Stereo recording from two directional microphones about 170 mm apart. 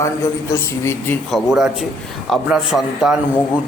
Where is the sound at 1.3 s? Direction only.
Centre (ahead or behind).